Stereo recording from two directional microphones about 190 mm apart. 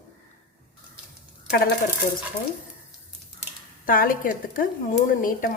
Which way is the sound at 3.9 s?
45° left (ahead or behind).